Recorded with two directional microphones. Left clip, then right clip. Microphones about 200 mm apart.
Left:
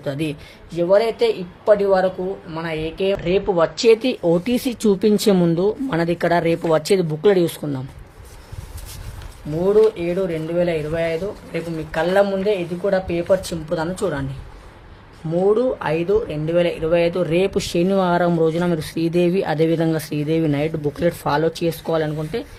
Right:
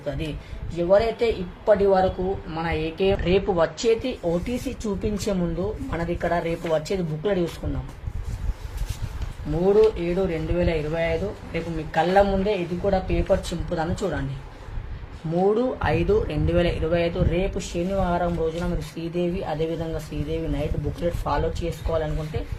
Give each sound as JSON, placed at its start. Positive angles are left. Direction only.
{"t": 0.8, "sound": "speech", "side_deg": 30}
{"t": 3.5, "sound": "speech", "side_deg": 30}
{"t": 4.0, "sound": "speech", "side_deg": 50}
{"t": 9.6, "sound": "speech", "side_deg": 25}
{"t": 15.3, "sound": "speech", "side_deg": 20}